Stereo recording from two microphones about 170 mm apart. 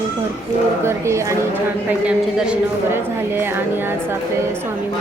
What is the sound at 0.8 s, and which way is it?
A woman's voice, 15° right (ahead or behind).